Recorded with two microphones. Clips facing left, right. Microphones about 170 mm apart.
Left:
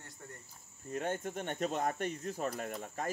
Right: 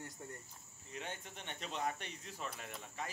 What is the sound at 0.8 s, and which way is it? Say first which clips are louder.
Speech: left 11 dB; 50° left (ahead or behind).